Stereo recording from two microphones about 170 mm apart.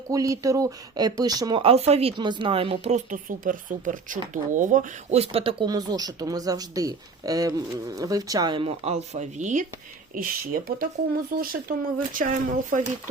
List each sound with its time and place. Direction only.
0.1 s speech: 20° right (ahead or behind); by 9.6 s 45° right (ahead or behind)
10.2 s speech: 60° right (ahead or behind)